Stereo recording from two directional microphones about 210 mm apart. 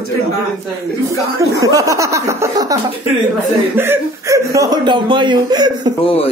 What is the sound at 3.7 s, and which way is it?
Speech, 10° right (ahead or behind).